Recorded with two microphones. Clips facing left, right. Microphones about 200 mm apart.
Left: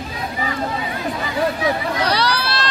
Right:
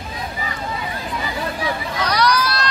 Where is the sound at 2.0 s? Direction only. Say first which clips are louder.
Right 5 dB; 30° left (ahead or behind).